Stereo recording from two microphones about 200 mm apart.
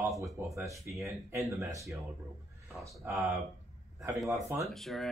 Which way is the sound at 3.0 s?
10° right (ahead or behind).